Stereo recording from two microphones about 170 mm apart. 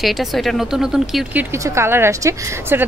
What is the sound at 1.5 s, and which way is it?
A woman's voice, 15° right (ahead or behind).